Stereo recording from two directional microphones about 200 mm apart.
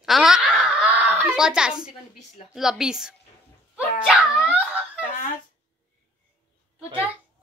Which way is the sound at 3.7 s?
Centre (ahead or behind).